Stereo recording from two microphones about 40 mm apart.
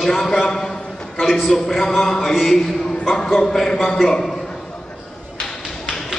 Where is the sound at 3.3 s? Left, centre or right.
Centre.